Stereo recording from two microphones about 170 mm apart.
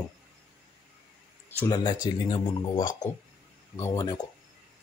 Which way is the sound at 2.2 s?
30° left (ahead or behind).